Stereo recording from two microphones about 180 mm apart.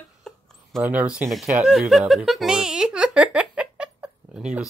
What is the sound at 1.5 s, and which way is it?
Music, centre (ahead or behind).